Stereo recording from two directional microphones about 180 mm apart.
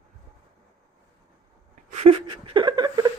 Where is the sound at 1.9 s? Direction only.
35° right (ahead or behind).